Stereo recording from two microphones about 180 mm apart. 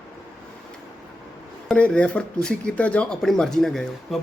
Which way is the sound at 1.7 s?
5° left (ahead or behind).